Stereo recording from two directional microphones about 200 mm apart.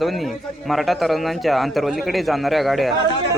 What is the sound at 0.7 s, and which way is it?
A man's voice, centre (ahead or behind).